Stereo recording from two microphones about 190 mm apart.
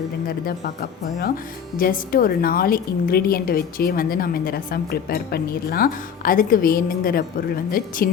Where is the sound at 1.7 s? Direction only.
50° left (ahead or behind).